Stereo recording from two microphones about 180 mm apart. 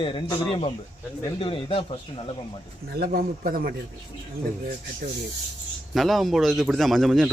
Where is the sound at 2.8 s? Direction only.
60° right (ahead or behind).